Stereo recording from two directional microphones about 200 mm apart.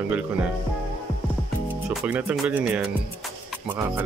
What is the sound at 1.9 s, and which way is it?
Speech, 5° right (ahead or behind).